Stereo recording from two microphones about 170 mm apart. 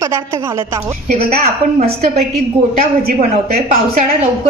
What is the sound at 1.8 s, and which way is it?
Speech, 65° right (ahead or behind).